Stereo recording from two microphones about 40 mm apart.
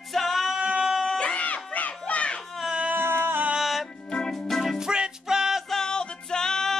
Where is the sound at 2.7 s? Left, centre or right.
Right.